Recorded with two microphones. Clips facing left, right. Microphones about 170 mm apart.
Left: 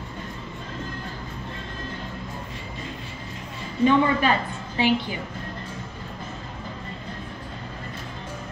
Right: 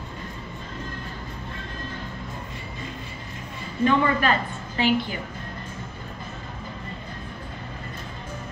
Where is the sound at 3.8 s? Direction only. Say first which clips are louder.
Left 2 dB; 15° left (ahead or behind).